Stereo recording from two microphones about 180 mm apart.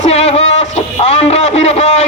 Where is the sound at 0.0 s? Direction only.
35° left (ahead or behind).